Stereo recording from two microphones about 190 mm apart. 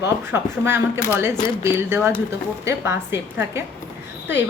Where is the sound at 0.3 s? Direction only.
10° right (ahead or behind).